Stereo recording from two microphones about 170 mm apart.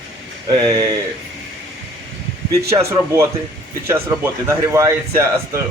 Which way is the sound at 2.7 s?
15° right (ahead or behind).